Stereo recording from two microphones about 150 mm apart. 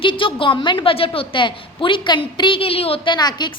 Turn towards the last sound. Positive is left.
turn(degrees=30)  # may be behind; listen again after turning